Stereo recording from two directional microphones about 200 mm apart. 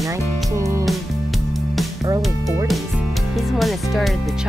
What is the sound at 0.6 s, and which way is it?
Music, 15° right (ahead or behind).